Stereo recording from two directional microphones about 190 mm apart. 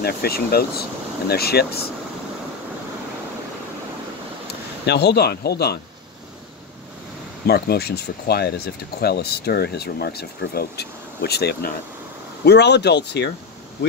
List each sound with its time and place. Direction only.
0.0 s speech: 55° left (ahead or behind)
4.8 s speech: 60° left (ahead or behind)
7.4 s speech: 55° left (ahead or behind)